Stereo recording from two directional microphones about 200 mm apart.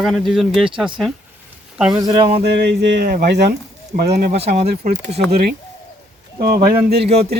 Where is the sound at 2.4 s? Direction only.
55° right (ahead or behind).